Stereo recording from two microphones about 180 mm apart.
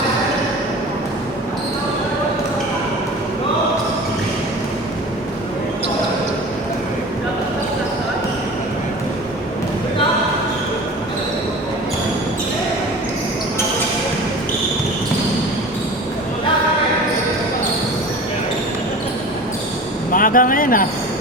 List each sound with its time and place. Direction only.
20.1 s basketball bounce: 50° left (ahead or behind)